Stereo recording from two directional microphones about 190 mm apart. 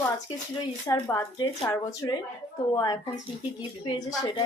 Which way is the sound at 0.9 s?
20° left (ahead or behind).